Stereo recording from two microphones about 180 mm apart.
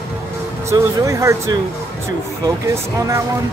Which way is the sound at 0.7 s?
15° right (ahead or behind).